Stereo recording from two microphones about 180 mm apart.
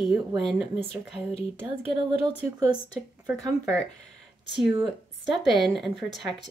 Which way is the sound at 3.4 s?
20° right (ahead or behind).